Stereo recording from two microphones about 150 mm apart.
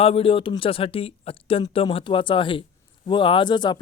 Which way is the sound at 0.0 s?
40° left (ahead or behind).